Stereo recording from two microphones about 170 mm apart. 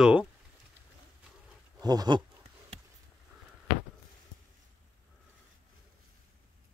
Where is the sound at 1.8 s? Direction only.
25° right (ahead or behind).